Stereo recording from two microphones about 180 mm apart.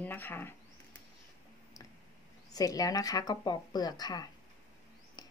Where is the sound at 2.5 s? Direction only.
20° left (ahead or behind).